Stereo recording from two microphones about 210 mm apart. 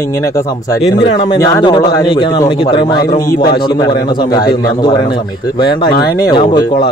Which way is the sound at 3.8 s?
20° left (ahead or behind).